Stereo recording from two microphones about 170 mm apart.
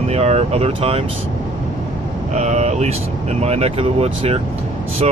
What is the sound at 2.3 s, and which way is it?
Speech, 40° right (ahead or behind).